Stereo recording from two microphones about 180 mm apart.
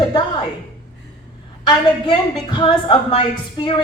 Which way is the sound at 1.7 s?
25° left (ahead or behind).